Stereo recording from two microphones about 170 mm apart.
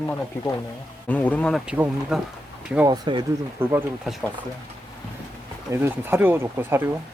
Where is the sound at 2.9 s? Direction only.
30° right (ahead or behind).